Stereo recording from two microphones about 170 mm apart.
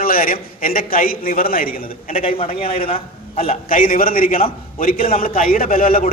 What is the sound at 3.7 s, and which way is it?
Speech, 55° left (ahead or behind).